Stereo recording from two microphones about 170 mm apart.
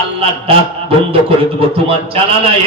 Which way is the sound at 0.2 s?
35° right (ahead or behind).